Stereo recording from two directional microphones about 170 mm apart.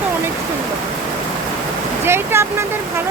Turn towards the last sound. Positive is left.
turn(degrees=-15)  # may be behind; listen again after turning